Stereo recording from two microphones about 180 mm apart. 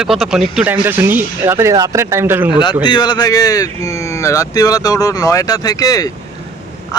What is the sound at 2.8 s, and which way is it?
Speech, 25° left (ahead or behind).